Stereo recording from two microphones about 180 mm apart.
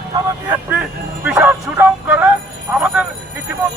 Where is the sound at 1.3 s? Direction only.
10° right (ahead or behind).